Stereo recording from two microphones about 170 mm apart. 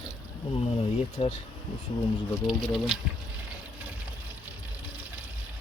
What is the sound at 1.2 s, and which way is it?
Speech, 35° left (ahead or behind).